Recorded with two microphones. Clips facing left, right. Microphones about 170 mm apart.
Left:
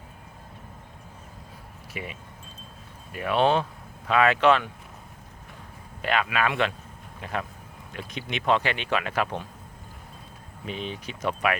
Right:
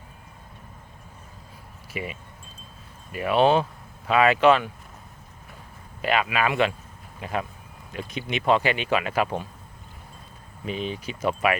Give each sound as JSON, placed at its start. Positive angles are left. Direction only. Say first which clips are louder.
{"t": 1.9, "sound": "speech", "louder": "right 4 dB", "side_deg": 0}
{"t": 6.0, "sound": "speech", "louder": "right 2 dB", "side_deg": -5}
{"t": 10.7, "sound": "speech", "louder": "right 4 dB", "side_deg": -5}